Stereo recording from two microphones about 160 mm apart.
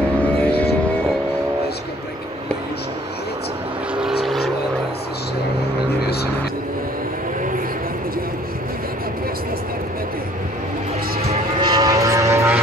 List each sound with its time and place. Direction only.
0.2 s vehicle: 10° left (ahead or behind)
3.9 s vehicle: centre (ahead or behind)
11.1 s vehicle: 40° right (ahead or behind)
11.7 s vehicle: 20° right (ahead or behind)